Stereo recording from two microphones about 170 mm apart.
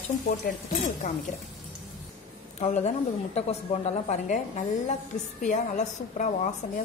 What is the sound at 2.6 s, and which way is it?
A woman's voice, 40° left (ahead or behind).